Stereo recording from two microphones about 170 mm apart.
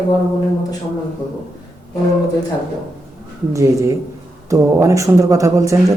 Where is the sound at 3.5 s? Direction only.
15° right (ahead or behind).